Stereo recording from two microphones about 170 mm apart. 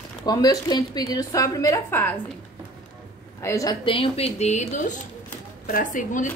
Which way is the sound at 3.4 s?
20° left (ahead or behind).